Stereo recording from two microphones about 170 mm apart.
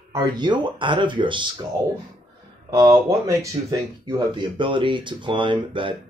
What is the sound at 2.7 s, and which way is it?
Speech, 15° right (ahead or behind).